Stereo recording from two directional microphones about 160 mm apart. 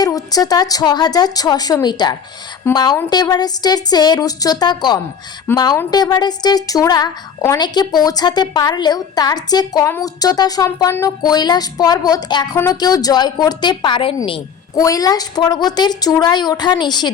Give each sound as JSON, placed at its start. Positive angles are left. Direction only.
{"t": 0.0, "sound": "a woman's voice", "side_deg": 25}
{"t": 14.8, "sound": "a woman's voice", "side_deg": 20}